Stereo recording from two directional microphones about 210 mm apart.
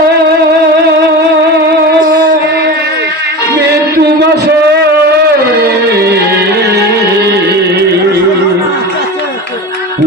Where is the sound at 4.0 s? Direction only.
50° right (ahead or behind).